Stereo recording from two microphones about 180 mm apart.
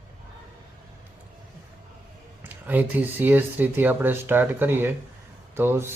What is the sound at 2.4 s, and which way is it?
Speech, 10° right (ahead or behind).